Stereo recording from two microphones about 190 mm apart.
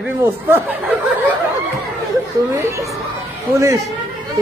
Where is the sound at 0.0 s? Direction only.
10° right (ahead or behind).